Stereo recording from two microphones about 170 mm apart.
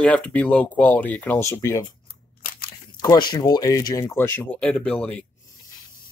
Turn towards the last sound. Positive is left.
turn(degrees=10)  # may be behind; listen again after turning